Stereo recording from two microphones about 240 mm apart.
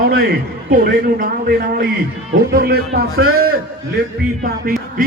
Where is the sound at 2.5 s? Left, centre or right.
Right.